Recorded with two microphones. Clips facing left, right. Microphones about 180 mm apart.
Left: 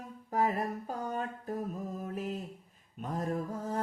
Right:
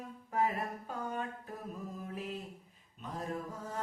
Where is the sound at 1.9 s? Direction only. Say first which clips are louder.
Left 4 dB; 45° left (ahead or behind).